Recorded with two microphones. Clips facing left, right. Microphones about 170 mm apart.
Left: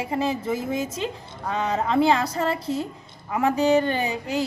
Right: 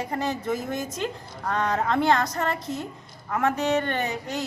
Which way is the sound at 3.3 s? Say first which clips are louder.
Left 4 dB; 15° left (ahead or behind).